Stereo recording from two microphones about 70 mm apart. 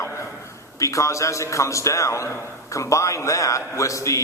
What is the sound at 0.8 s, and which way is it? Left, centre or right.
A man's voice, left.